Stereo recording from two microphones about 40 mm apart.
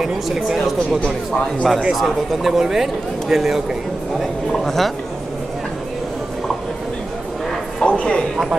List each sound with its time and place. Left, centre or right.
0.0 s speech: centre
1.0 s speech: left
1.9 s speech: centre
4.5 s a woman's voice: centre
7.8 s a sound: left